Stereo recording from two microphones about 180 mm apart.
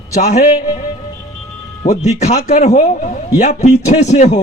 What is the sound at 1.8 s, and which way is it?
A man's voice, 40° left (ahead or behind).